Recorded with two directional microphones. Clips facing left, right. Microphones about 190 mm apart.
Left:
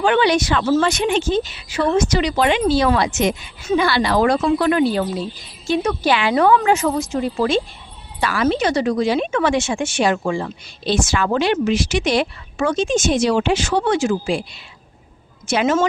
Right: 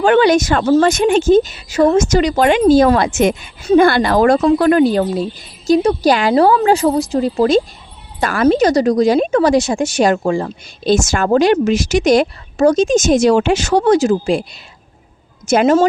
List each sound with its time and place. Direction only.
0.0 s a woman's voice: 45° right (ahead or behind)